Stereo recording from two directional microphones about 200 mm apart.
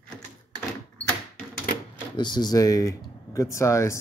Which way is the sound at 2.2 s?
20° left (ahead or behind).